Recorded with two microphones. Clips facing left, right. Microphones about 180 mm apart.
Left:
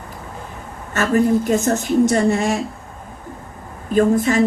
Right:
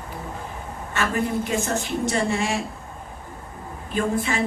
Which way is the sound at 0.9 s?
40° left (ahead or behind).